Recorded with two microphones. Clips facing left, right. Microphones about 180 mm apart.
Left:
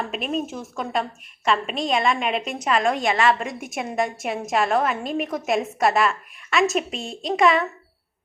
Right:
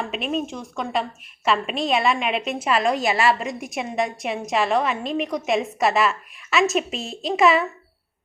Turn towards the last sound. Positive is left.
turn(degrees=-5)  # may be behind; listen again after turning